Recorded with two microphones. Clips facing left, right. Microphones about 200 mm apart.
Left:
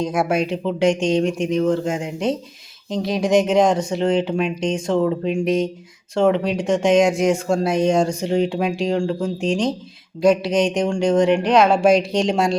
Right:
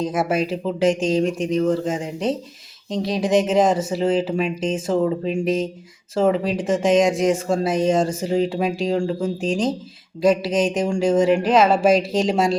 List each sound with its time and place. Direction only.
0.0 s speech: centre (ahead or behind)